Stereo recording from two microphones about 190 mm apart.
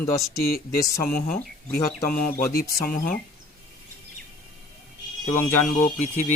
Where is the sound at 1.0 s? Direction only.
50° left (ahead or behind).